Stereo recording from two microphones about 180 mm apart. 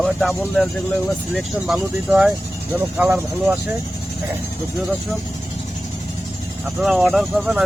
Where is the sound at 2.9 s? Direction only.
10° right (ahead or behind).